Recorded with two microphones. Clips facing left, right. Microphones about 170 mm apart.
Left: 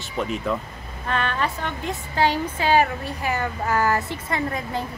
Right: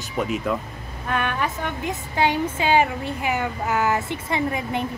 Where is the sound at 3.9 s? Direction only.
20° right (ahead or behind).